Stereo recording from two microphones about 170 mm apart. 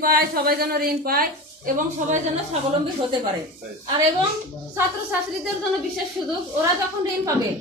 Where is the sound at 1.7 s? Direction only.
45° right (ahead or behind).